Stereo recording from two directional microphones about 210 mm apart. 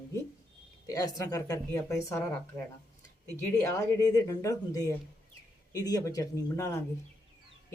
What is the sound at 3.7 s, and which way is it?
Speech, 15° left (ahead or behind).